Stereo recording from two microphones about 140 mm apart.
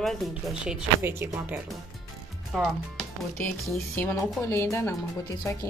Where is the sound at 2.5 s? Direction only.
Centre (ahead or behind).